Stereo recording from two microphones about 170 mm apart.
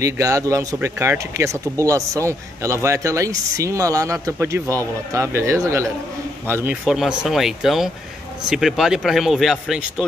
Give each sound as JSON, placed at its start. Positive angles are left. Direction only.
{"t": 0.0, "sound": "speech", "side_deg": -20}